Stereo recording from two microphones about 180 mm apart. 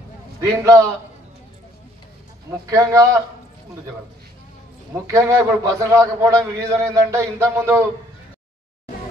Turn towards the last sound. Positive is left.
turn(degrees=-15)  # may be behind; listen again after turning